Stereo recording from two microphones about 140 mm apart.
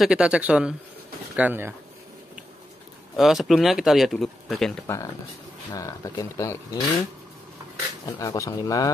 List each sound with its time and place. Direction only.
0.0 s speech: 5° right (ahead or behind)
3.2 s speech: centre (ahead or behind)
5.7 s speech: 25° left (ahead or behind)
8.2 s speech: 25° left (ahead or behind)